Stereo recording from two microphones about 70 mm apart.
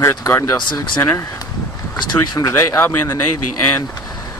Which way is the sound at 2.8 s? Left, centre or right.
Left.